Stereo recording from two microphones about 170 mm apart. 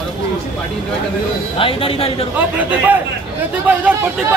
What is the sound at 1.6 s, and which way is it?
Speech, 35° left (ahead or behind).